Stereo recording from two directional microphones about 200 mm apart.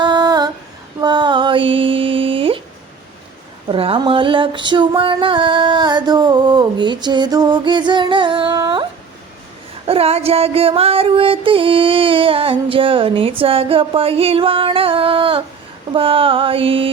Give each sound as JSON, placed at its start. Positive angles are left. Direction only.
{"t": 0.0, "sound": "female singing", "side_deg": -20}
{"t": 3.7, "sound": "music", "side_deg": -25}